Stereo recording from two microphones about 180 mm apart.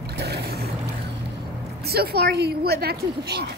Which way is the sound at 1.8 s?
60° right (ahead or behind).